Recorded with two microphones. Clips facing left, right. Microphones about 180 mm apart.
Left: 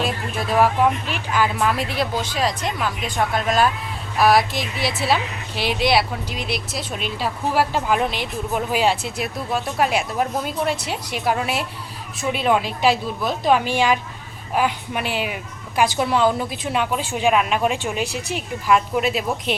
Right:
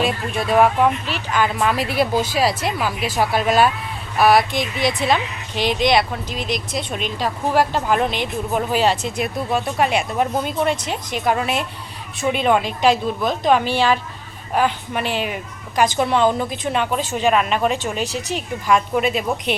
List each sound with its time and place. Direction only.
0.0 s a woman's voice: centre (ahead or behind)